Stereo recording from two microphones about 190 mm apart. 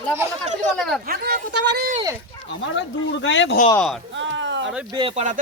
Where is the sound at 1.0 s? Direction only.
55° right (ahead or behind).